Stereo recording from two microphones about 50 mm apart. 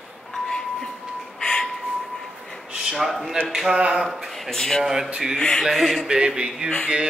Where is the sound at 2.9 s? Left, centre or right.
Centre.